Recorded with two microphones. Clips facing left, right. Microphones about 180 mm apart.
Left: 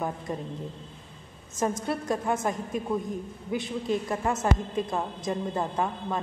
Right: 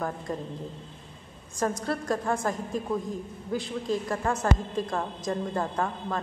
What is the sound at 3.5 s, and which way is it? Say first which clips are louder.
Speech: left 1 dB; 20° left (ahead or behind).